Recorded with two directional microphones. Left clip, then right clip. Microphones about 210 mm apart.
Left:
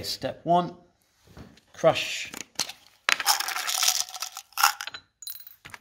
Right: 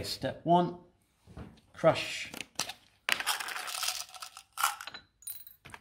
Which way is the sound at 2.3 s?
20° left (ahead or behind).